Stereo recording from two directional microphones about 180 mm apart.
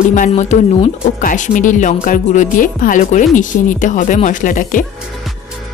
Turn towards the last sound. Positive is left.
turn(degrees=45)  # may be behind; listen again after turning